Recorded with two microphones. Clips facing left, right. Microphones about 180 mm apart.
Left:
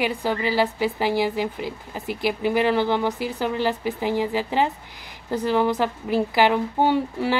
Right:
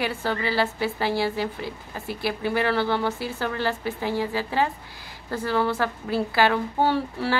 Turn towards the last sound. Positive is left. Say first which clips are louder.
# left 3 dB
turn(degrees=15)  # may be behind; listen again after turning